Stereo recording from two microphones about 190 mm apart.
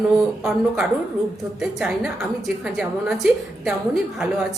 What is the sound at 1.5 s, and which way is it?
Speech, 5° right (ahead or behind).